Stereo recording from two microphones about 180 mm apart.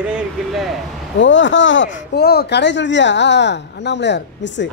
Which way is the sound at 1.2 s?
90° left.